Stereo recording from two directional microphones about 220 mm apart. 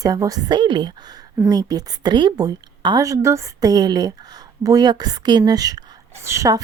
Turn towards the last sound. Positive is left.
turn(degrees=-15)  # may be behind; listen again after turning